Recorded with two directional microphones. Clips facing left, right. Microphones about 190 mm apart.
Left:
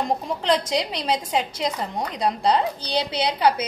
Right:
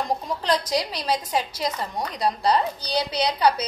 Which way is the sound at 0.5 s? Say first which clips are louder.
Left 2 dB; 25° left (ahead or behind).